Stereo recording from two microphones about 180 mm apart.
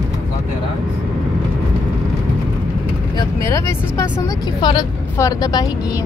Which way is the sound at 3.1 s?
15° left (ahead or behind).